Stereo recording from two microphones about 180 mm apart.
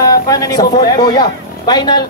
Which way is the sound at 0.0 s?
20° left (ahead or behind).